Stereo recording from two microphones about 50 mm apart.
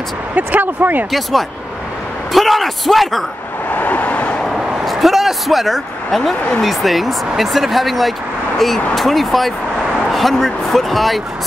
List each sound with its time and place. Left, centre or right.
0.4 s speech: right
2.3 s speech: centre
3.7 s vehicle: left
4.8 s a sound: centre
6.6 s speech: centre